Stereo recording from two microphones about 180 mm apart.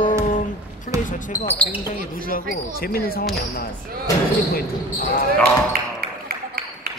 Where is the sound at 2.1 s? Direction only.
50° left (ahead or behind).